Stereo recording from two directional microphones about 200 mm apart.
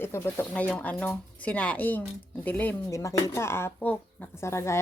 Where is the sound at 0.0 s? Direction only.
10° left (ahead or behind).